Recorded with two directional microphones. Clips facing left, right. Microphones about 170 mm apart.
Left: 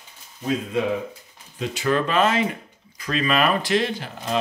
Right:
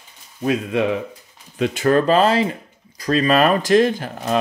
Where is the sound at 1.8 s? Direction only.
40° right (ahead or behind).